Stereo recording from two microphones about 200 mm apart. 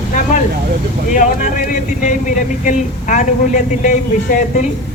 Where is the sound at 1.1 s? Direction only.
40° left (ahead or behind).